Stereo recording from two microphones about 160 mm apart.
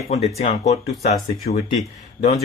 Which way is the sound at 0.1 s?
40° left (ahead or behind).